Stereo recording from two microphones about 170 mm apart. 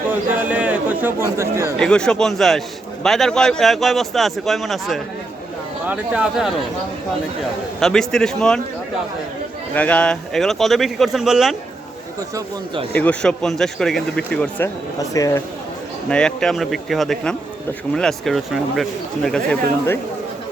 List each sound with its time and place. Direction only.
0.1 s a sound: 10° right (ahead or behind)
1.8 s a man's voice: 5° left (ahead or behind)
7.8 s a man's voice: 5° left (ahead or behind)
9.7 s a man's voice: 5° left (ahead or behind)
12.9 s a man's voice: 10° left (ahead or behind)
15.1 s speech: 20° left (ahead or behind)
16.0 s a man's voice: 5° left (ahead or behind)